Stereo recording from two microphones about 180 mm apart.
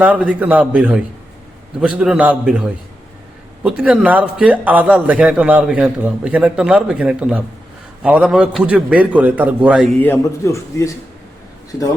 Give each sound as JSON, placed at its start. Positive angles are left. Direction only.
{"t": 0.0, "sound": "a man's voice", "side_deg": -5}
{"t": 10.0, "sound": "a man's voice", "side_deg": 15}